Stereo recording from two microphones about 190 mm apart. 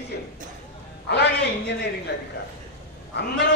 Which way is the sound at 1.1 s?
65° left (ahead or behind).